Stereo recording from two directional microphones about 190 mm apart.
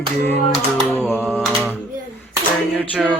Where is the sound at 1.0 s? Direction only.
10° right (ahead or behind).